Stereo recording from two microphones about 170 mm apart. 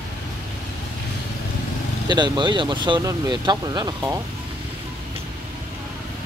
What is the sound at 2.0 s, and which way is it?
Speech, 25° right (ahead or behind).